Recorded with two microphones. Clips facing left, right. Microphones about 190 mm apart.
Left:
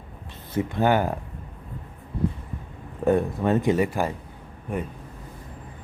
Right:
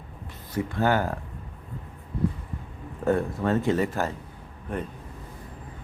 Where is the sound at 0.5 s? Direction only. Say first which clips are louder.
Left 3 dB; 20° left (ahead or behind).